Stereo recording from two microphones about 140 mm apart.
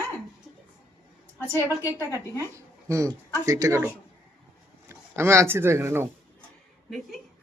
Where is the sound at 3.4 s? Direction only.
25° right (ahead or behind).